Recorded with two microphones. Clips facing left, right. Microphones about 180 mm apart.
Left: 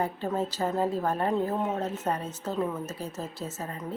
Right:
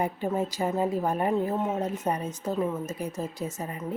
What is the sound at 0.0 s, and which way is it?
A woman's voice, 15° right (ahead or behind).